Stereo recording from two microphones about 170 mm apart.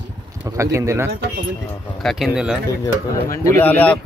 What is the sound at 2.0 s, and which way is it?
Speech, centre (ahead or behind).